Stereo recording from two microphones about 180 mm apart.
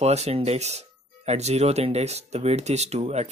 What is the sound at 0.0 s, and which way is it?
Speech, 35° right (ahead or behind).